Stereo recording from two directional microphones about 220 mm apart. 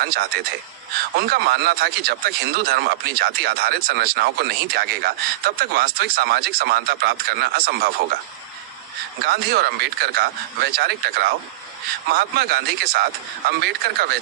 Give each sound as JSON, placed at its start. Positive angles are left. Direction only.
{"t": 0.0, "sound": "speech", "side_deg": -45}
{"t": 9.2, "sound": "speech", "side_deg": -45}